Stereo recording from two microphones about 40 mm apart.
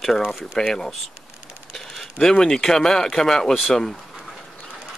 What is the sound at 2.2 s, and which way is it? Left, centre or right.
Speech, centre.